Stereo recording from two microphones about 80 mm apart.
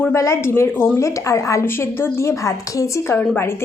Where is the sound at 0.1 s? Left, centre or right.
Left.